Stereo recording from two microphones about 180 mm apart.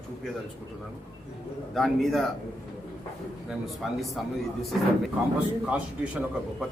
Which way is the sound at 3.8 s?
Centre (ahead or behind).